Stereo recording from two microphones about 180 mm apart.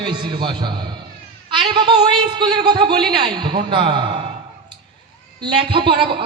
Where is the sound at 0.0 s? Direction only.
25° right (ahead or behind).